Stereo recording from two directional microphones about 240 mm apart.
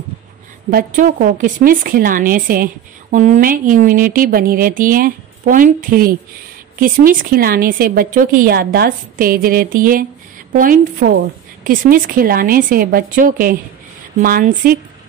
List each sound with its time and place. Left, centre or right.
0.7 s a woman's voice: right